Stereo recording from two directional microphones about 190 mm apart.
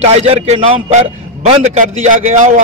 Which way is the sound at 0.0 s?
35° right (ahead or behind).